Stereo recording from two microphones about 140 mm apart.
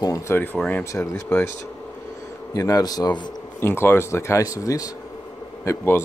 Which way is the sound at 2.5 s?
25° left (ahead or behind).